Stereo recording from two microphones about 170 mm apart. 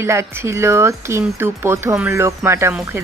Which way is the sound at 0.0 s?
15° right (ahead or behind).